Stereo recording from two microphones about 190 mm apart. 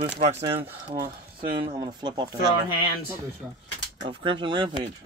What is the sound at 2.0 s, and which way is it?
Speech, 20° right (ahead or behind).